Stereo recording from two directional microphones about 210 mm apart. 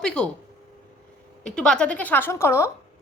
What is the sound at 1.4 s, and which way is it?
A woman's voice, 5° left (ahead or behind).